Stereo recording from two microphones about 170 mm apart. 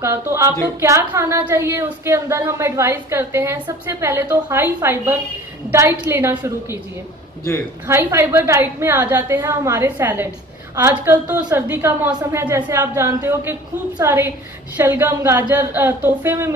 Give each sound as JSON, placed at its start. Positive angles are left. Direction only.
{"t": 0.0, "sound": "speech", "side_deg": -15}
{"t": 7.8, "sound": "speech", "side_deg": -15}